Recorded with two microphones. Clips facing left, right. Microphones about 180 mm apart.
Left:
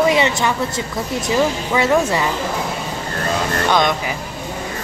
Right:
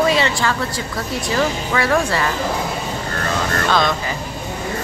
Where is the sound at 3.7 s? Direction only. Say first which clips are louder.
Left 2 dB; 20° left (ahead or behind).